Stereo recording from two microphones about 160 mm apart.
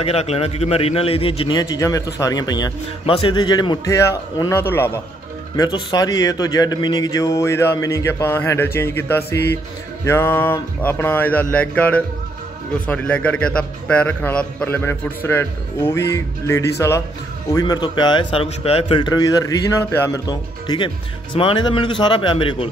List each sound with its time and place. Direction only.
0.0 s a man's voice: 40° left (ahead or behind); by 5.0 s 15° left (ahead or behind)
5.6 s a man's voice: 25° left (ahead or behind)
20.2 s a man's voice: 25° left (ahead or behind)